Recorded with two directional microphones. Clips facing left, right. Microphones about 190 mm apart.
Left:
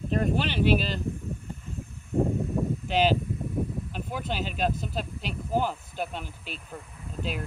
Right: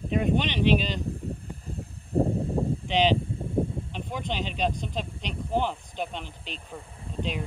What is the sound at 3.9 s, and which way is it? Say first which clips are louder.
Speech: even; 5° left (ahead or behind).